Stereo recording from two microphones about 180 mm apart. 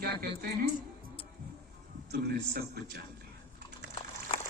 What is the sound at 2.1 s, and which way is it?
Speech, 65° right (ahead or behind).